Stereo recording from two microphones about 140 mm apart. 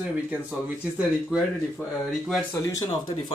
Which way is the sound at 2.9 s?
35° left (ahead or behind).